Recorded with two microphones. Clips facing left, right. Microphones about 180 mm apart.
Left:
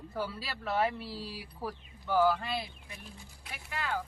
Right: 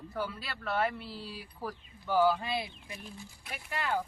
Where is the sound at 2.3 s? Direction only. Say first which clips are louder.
Right 1 dB; 20° right (ahead or behind).